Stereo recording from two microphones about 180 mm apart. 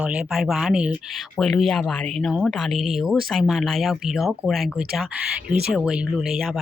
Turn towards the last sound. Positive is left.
turn(degrees=0)  # may be behind; listen again after turning